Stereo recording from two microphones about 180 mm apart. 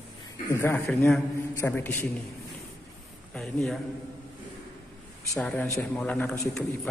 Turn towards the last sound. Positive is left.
turn(degrees=5)  # may be behind; listen again after turning